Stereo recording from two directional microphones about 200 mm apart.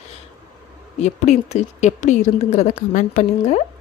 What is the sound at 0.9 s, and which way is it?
Speech, 35° left (ahead or behind).